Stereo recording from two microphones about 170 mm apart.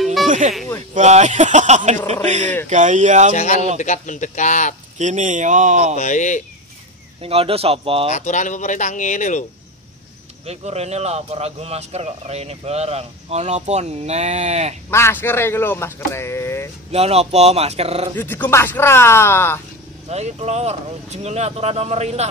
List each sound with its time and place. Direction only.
0.0 s music: centre (ahead or behind)
0.3 s speech: 45° right (ahead or behind)
3.3 s speech: 40° left (ahead or behind)
4.9 s speech: 45° right (ahead or behind)
5.9 s speech: 45° left (ahead or behind)
7.2 s speech: 35° right (ahead or behind)
8.1 s speech: 45° left (ahead or behind)
10.4 s speech: 40° right (ahead or behind)
14.9 s speech: 15° left (ahead or behind)
16.9 s speech: 35° right (ahead or behind)
18.1 s speech: 10° left (ahead or behind)
20.1 s speech: 40° right (ahead or behind)